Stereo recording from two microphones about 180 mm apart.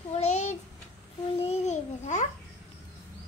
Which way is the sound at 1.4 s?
35° left (ahead or behind).